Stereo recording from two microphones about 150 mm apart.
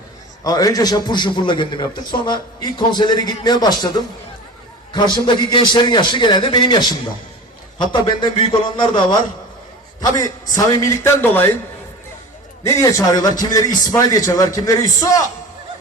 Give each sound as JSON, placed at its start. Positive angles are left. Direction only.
{"t": 0.4, "sound": "a man's voice", "side_deg": 25}
{"t": 4.9, "sound": "a man's voice", "side_deg": 30}
{"t": 12.6, "sound": "a man's voice", "side_deg": 20}